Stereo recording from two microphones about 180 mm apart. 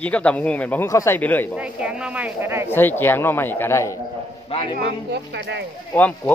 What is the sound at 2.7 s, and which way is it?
A man's voice, 10° left (ahead or behind).